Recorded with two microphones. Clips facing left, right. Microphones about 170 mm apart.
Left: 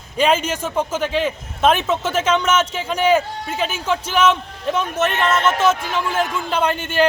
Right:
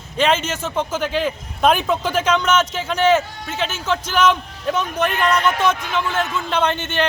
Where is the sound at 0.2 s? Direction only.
5° left (ahead or behind).